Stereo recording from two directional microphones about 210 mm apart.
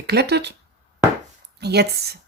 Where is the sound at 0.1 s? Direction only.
50° right (ahead or behind).